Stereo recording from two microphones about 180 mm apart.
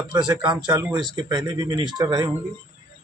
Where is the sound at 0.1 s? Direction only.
25° right (ahead or behind).